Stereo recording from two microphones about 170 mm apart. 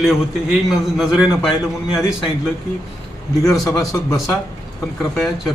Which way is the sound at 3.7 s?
20° left (ahead or behind).